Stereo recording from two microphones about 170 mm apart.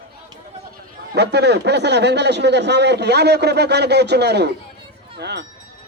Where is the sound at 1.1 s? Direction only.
75° right (ahead or behind).